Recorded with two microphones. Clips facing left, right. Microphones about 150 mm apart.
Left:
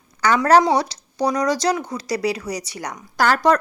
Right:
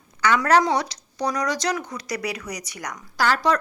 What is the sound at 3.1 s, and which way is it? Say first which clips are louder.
Speech: left 4 dB; 45° left (ahead or behind).